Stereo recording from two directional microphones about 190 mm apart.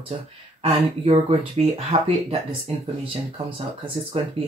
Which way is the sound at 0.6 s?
30° right (ahead or behind).